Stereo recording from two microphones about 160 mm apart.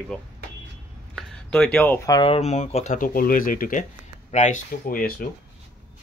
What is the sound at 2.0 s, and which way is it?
Speech, 30° left (ahead or behind).